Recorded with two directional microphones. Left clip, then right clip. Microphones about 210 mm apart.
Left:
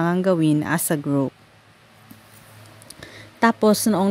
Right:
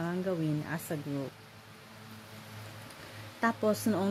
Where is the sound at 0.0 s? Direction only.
50° left (ahead or behind).